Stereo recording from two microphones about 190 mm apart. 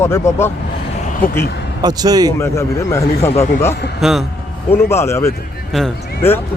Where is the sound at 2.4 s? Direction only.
15° left (ahead or behind).